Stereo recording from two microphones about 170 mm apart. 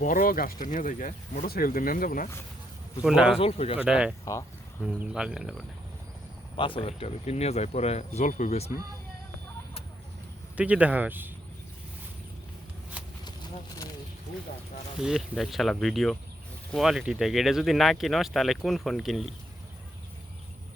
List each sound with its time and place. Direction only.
0.0 s speech: 55° left (ahead or behind)
3.0 s speech: 5° right (ahead or behind)
3.3 s speech: 35° left (ahead or behind)
3.8 s speech: 5° right (ahead or behind)
6.6 s speech: 30° left (ahead or behind)
10.6 s speech: 10° right (ahead or behind)
15.0 s speech: centre (ahead or behind)